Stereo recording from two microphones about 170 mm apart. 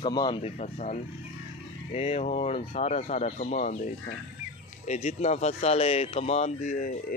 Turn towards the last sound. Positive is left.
turn(degrees=45)  # may be behind; listen again after turning